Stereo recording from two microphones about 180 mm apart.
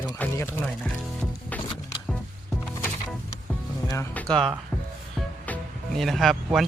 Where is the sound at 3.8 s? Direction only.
15° left (ahead or behind).